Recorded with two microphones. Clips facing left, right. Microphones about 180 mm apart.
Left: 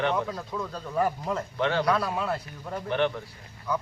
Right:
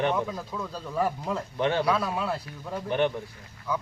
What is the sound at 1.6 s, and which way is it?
Speech, 15° right (ahead or behind).